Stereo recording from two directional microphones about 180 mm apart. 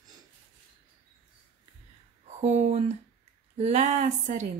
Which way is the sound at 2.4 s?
40° right (ahead or behind).